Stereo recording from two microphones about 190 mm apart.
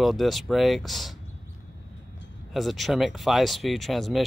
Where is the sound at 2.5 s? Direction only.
Centre (ahead or behind).